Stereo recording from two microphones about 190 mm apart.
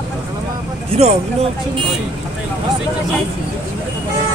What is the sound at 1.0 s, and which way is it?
Speech, 35° right (ahead or behind).